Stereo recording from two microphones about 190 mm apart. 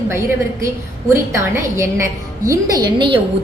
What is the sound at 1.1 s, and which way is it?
A woman's voice, 15° right (ahead or behind).